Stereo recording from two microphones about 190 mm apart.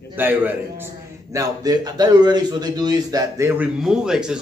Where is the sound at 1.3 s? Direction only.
20° right (ahead or behind).